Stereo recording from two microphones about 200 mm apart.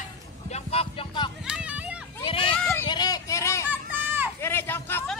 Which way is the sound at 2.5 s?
10° left (ahead or behind).